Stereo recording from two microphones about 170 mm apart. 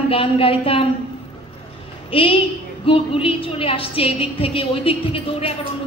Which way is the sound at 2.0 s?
30° left (ahead or behind).